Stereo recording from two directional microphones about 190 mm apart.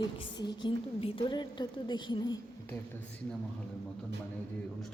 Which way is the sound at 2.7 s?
10° left (ahead or behind).